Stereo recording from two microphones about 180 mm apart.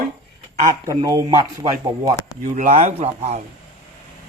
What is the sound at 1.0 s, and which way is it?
Speech, 20° right (ahead or behind).